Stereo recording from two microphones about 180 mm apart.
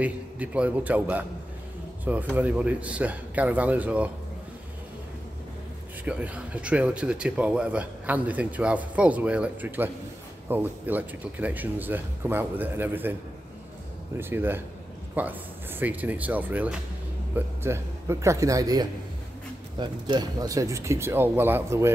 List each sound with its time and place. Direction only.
0.0 s speech: 10° right (ahead or behind)
6.0 s speech: 5° right (ahead or behind)
14.1 s speech: 10° right (ahead or behind)